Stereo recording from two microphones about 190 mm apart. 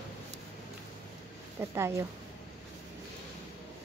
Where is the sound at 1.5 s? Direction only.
15° right (ahead or behind).